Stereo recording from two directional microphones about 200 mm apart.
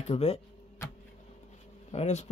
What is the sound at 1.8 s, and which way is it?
Speech, 35° left (ahead or behind).